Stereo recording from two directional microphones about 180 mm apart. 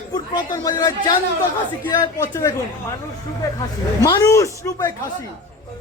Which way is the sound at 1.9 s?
20° left (ahead or behind).